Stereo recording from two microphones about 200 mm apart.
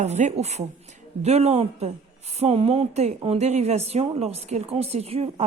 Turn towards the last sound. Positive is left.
turn(degrees=-30)  # may be behind; listen again after turning